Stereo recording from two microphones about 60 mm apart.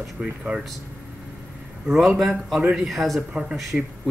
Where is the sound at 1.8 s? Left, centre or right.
Centre.